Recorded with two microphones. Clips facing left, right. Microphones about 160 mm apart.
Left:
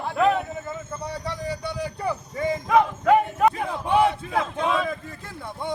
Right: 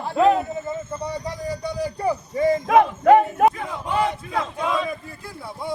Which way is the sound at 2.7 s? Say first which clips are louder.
Right 3 dB; 60° right (ahead or behind).